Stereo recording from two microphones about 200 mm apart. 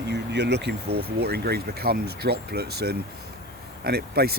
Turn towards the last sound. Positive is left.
turn(degrees=-50)  # may be behind; listen again after turning